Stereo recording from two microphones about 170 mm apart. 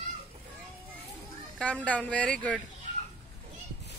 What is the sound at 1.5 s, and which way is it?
Speech, 5° left (ahead or behind).